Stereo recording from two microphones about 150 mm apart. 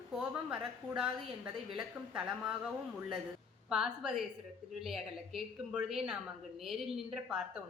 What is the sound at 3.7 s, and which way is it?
Speech, 5° right (ahead or behind).